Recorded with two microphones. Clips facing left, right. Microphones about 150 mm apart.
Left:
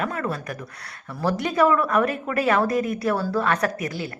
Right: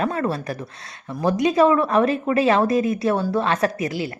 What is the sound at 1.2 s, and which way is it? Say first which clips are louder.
A woman's voice: right 4 dB; 15° right (ahead or behind).